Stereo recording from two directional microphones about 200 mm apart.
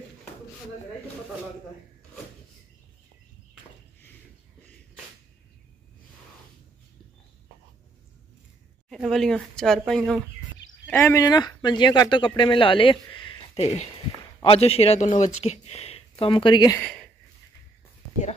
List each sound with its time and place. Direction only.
8.8 s speech: centre (ahead or behind); by 16.8 s 20° left (ahead or behind)